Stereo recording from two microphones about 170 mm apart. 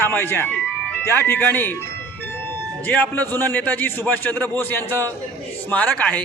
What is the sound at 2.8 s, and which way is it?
A man's voice, 10° left (ahead or behind).